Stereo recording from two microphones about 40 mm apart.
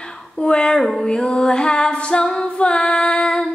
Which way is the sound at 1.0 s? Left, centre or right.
Left.